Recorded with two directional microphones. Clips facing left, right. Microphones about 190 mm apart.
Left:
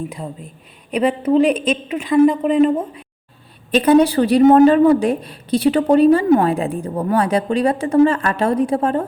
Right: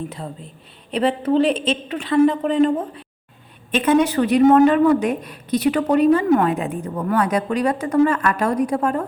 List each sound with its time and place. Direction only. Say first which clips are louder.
0.1 s a woman's voice: left 2 dB; 10° left (ahead or behind)
3.7 s speech: left 4 dB; 35° left (ahead or behind)